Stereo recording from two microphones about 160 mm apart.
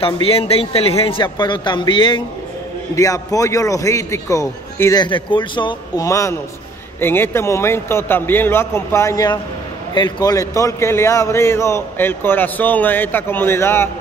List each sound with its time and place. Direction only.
0.0 s a man's voice: 35° left (ahead or behind)
2.9 s a man's voice: 20° left (ahead or behind)
5.0 s a man's voice: 30° left (ahead or behind); by 13.8 s 15° left (ahead or behind)